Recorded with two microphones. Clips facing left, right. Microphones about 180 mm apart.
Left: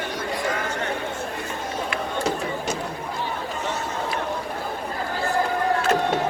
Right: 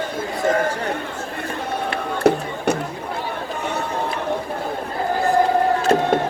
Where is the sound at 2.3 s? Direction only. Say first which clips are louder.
Right 11 dB; 60° right (ahead or behind).